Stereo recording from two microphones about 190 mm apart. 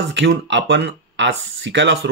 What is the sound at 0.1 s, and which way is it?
Speech, 70° right (ahead or behind).